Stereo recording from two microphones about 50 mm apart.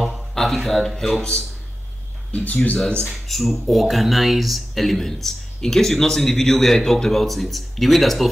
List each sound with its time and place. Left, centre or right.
0.0 s a sound: centre
2.3 s speech: left
3.1 s speech: centre